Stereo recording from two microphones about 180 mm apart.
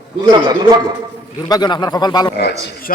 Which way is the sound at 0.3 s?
25° right (ahead or behind).